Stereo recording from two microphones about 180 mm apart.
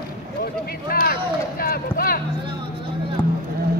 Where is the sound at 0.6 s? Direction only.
55° left (ahead or behind).